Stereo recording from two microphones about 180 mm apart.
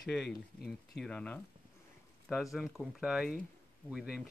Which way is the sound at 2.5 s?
Centre (ahead or behind).